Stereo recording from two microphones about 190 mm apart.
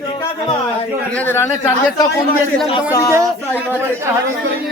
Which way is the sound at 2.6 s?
20° left (ahead or behind).